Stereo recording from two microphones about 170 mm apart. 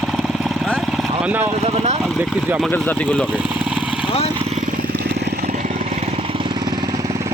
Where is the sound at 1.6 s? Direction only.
40° right (ahead or behind).